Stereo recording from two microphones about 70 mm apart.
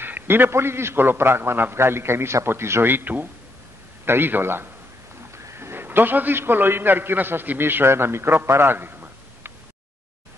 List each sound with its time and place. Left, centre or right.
0.0 s a man's voice: right